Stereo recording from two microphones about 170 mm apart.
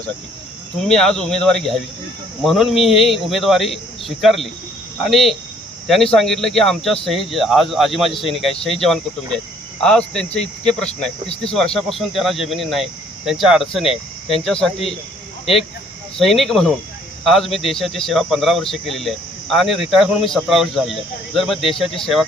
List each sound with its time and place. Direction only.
0.9 s speech: 5° left (ahead or behind)
16.1 s speech: centre (ahead or behind)